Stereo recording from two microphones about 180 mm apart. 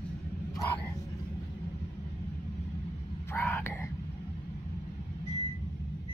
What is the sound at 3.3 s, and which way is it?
Whispering, 10° left (ahead or behind).